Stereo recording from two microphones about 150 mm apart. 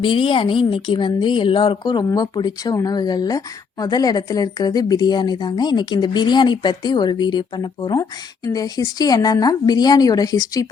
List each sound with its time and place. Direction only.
0.0 s speech: 35° left (ahead or behind)